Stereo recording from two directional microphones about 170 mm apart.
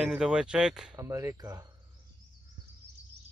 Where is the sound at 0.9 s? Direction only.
15° right (ahead or behind).